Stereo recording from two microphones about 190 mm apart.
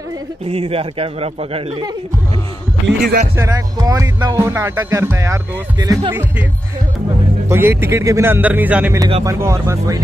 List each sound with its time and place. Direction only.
0.5 s speech: 30° right (ahead or behind)
2.9 s speech: 55° right (ahead or behind)
3.3 s speech: 20° right (ahead or behind)
7.4 s speech: 15° right (ahead or behind)